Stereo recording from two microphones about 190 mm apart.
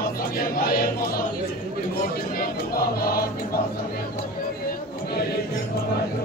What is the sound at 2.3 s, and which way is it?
Music, 50° left (ahead or behind).